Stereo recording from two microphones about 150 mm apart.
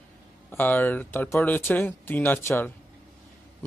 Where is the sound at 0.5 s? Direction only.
10° left (ahead or behind).